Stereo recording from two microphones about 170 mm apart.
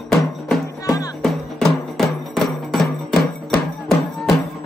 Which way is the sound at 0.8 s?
20° left (ahead or behind).